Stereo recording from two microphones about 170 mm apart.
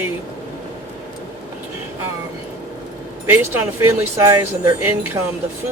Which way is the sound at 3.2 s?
10° right (ahead or behind).